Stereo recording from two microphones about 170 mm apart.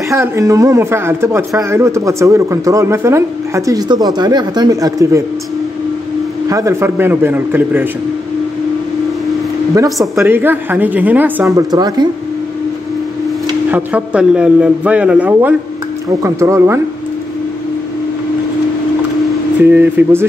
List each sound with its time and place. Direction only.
0.1 s speech: 20° right (ahead or behind)
6.5 s speech: 15° right (ahead or behind)
9.8 s speech: centre (ahead or behind)
10.2 s speech: 10° right (ahead or behind)
13.7 s speech: 10° right (ahead or behind)
19.6 s speech: 10° right (ahead or behind)